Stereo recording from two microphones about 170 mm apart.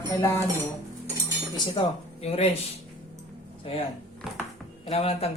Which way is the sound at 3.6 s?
35° left (ahead or behind).